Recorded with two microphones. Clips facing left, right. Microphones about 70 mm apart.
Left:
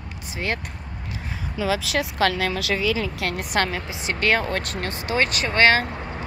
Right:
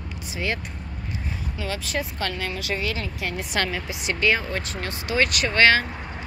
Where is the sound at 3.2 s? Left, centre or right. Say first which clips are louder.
Left 1 dB; left.